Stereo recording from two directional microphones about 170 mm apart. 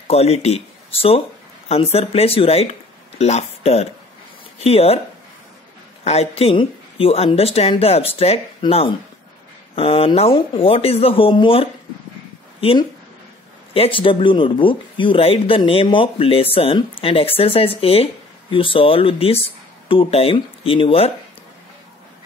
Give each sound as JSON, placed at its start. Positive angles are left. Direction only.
{"t": 0.1, "sound": "speech", "side_deg": 40}
{"t": 6.0, "sound": "speech", "side_deg": 35}